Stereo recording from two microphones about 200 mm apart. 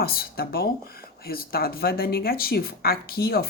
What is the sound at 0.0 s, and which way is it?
Speech, 50° left (ahead or behind).